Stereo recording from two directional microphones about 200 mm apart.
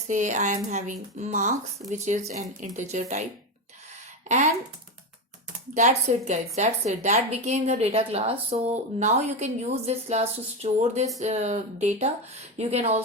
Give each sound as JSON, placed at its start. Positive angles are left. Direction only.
{"t": 0.1, "sound": "a woman's voice", "side_deg": -40}
{"t": 4.3, "sound": "a woman's voice", "side_deg": -40}
{"t": 5.7, "sound": "a woman's voice", "side_deg": -35}